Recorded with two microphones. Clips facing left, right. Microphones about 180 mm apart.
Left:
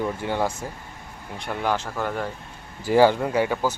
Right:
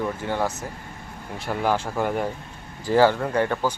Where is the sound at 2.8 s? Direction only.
15° left (ahead or behind).